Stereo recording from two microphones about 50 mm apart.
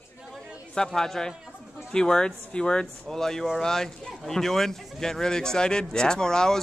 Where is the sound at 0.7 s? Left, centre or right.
Centre.